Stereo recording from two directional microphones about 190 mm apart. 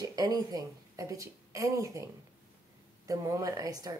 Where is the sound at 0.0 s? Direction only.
20° right (ahead or behind).